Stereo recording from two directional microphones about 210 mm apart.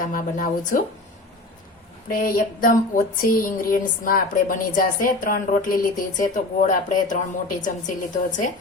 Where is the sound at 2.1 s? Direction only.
45° left (ahead or behind).